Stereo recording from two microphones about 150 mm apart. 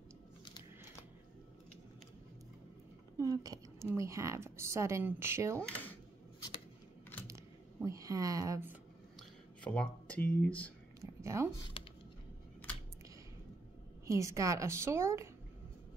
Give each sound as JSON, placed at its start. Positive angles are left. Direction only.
{"t": 3.2, "sound": "a woman's voice", "side_deg": -20}
{"t": 5.6, "sound": "speech", "side_deg": 10}
{"t": 7.2, "sound": "typing", "side_deg": -20}
{"t": 9.6, "sound": "speech", "side_deg": 10}
{"t": 11.0, "sound": "a sound", "side_deg": -20}
{"t": 11.7, "sound": "a sound", "side_deg": 35}
{"t": 14.0, "sound": "a woman's voice", "side_deg": -20}